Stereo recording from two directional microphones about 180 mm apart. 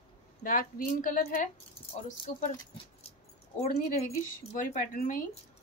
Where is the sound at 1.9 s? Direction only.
40° left (ahead or behind).